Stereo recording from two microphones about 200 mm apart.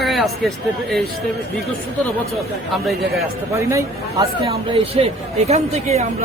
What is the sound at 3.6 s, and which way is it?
Speech, 15° right (ahead or behind).